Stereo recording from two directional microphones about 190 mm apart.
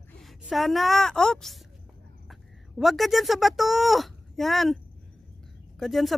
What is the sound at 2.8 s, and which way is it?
Speech, centre (ahead or behind).